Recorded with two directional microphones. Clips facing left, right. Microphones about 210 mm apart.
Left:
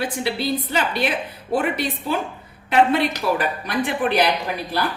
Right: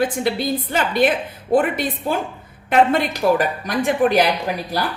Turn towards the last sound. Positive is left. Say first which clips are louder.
# right 1 dB
turn(degrees=-40)  # may be behind; listen again after turning